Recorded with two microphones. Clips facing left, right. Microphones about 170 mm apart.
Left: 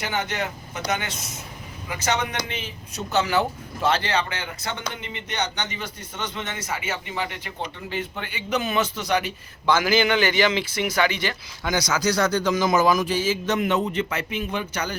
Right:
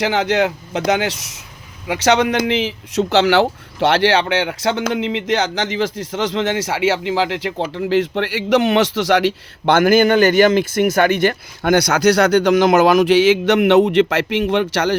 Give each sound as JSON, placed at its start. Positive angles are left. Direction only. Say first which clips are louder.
{"t": 0.0, "sound": "speech", "louder": "right 11 dB", "side_deg": -90}